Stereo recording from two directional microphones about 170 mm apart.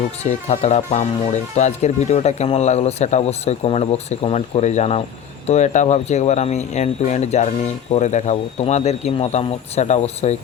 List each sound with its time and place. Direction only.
0.2 s speech: 40° left (ahead or behind)